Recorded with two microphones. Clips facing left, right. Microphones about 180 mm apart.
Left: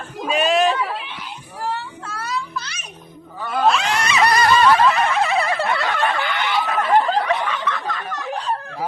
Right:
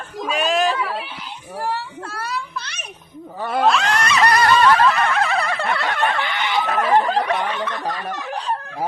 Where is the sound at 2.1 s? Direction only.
60° right (ahead or behind).